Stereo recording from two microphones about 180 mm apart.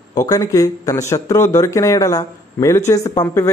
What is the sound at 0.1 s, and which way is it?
A man's voice, 20° left (ahead or behind).